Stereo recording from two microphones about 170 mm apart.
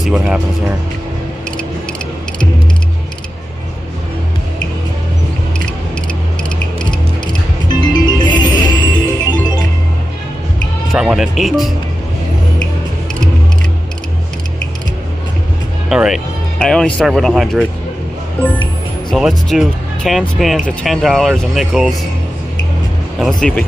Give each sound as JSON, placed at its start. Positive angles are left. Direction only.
{"t": 0.0, "sound": "speech", "side_deg": -5}
{"t": 7.6, "sound": "music", "side_deg": 25}
{"t": 10.9, "sound": "speech", "side_deg": -5}
{"t": 15.9, "sound": "speech", "side_deg": -5}
{"t": 19.1, "sound": "speech", "side_deg": 0}
{"t": 23.2, "sound": "speech", "side_deg": 5}